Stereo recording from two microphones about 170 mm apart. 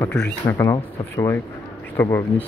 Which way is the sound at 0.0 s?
10° left (ahead or behind).